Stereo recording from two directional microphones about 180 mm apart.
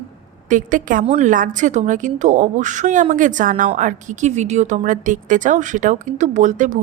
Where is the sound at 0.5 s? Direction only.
45° right (ahead or behind).